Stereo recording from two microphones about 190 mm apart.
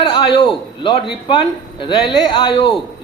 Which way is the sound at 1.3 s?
30° left (ahead or behind).